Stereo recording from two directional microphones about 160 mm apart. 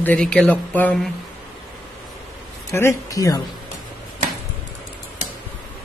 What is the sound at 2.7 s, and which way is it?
Speech, 20° left (ahead or behind).